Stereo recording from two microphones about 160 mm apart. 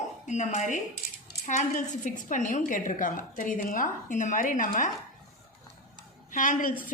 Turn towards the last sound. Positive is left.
turn(degrees=55)  # may be behind; listen again after turning